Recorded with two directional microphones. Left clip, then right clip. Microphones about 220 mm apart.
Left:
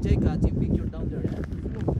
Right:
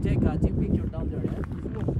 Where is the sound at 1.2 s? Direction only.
15° right (ahead or behind).